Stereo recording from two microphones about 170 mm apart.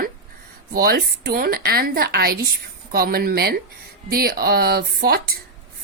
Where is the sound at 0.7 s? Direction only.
60° right (ahead or behind).